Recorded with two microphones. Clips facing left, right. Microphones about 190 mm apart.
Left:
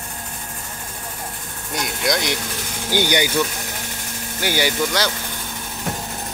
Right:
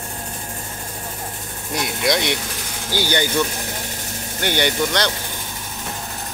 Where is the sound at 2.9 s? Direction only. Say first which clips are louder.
Left 2 dB; 15° left (ahead or behind).